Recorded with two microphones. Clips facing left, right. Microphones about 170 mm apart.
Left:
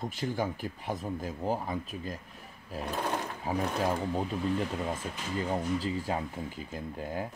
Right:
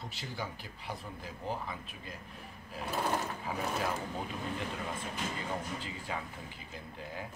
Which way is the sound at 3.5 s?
40° left (ahead or behind).